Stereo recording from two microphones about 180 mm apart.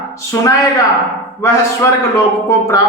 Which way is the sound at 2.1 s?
15° left (ahead or behind).